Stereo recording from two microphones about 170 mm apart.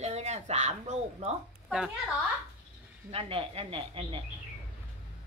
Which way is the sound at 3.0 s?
35° right (ahead or behind).